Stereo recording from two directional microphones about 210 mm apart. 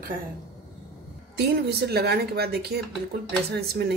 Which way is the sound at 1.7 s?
50° right (ahead or behind).